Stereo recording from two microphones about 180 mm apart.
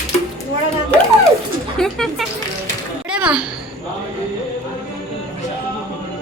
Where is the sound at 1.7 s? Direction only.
Centre (ahead or behind).